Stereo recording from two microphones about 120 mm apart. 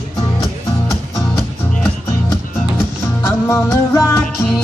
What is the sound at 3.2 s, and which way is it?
Music, 20° left (ahead or behind).